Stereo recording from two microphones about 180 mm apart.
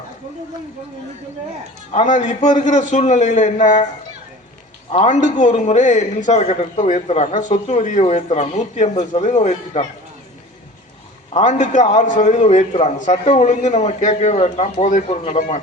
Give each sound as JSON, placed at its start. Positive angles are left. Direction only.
{"t": 1.9, "sound": "a man's voice", "side_deg": 40}
{"t": 4.9, "sound": "a man's voice", "side_deg": 40}
{"t": 11.3, "sound": "a man's voice", "side_deg": 40}